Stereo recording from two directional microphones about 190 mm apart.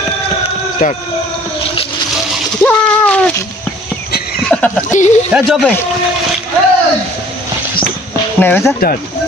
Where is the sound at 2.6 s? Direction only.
5° left (ahead or behind).